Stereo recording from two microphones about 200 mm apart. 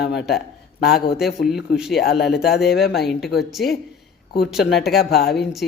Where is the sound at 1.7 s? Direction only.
5° right (ahead or behind).